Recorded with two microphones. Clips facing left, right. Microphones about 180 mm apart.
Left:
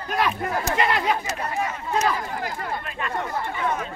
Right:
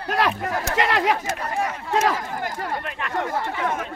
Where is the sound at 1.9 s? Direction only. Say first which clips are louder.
Right 2 dB; 90° right.